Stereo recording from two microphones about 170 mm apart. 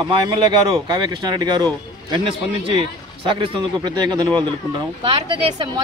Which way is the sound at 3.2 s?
30° right (ahead or behind).